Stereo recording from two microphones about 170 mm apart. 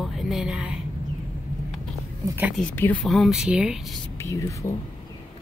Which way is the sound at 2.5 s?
10° left (ahead or behind).